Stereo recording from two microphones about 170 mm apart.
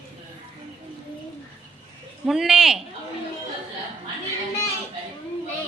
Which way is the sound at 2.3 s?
Centre (ahead or behind).